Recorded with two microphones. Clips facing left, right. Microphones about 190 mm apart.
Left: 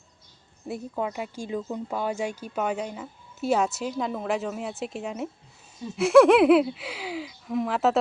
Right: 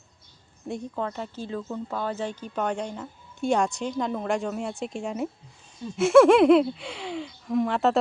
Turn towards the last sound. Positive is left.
turn(degrees=0)  # may be behind; listen again after turning